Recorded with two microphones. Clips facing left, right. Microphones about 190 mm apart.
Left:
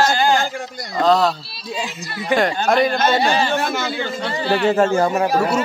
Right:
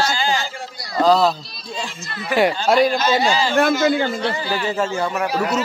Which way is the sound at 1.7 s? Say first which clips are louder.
Left 3 dB; 10° left (ahead or behind).